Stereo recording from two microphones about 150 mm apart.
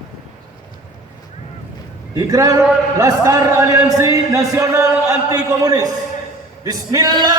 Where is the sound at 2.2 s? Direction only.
25° right (ahead or behind).